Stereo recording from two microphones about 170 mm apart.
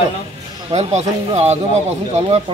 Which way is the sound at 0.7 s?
40° right (ahead or behind).